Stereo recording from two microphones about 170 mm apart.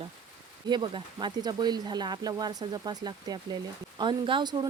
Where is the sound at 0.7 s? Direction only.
25° right (ahead or behind).